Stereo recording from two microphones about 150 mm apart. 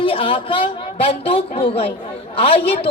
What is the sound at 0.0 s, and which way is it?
A woman's voice, 35° left (ahead or behind).